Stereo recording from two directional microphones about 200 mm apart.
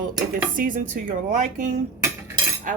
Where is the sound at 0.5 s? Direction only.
40° right (ahead or behind).